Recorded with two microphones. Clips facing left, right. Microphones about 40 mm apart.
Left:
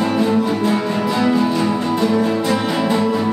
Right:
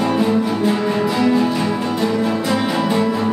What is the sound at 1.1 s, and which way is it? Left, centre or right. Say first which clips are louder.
Music: left 2 dB; centre.